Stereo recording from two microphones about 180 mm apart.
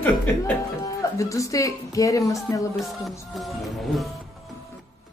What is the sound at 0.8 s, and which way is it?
Speech, 15° left (ahead or behind).